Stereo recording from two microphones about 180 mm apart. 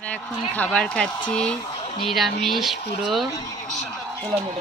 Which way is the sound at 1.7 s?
30° left (ahead or behind).